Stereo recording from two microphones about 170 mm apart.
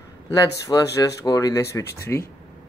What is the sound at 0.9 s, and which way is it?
A man's voice, 20° left (ahead or behind).